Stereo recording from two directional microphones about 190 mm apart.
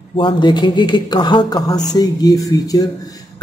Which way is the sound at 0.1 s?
25° left (ahead or behind).